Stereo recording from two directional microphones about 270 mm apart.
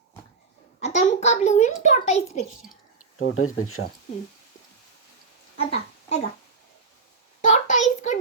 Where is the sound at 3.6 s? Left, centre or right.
Left.